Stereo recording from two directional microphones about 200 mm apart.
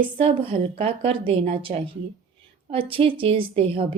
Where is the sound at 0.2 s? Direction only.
25° right (ahead or behind).